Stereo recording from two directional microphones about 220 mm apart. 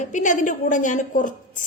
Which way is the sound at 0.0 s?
35° left (ahead or behind).